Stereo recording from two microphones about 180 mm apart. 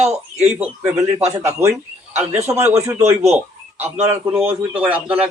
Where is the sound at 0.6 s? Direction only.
15° right (ahead or behind).